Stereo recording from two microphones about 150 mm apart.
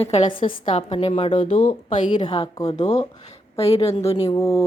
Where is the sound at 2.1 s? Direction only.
30° left (ahead or behind).